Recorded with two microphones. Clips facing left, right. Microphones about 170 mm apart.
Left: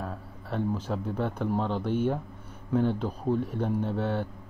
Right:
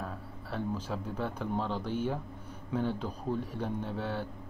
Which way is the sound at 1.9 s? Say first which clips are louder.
Left 8 dB; 50° left (ahead or behind).